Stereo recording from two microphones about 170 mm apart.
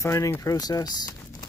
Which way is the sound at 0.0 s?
15° left (ahead or behind).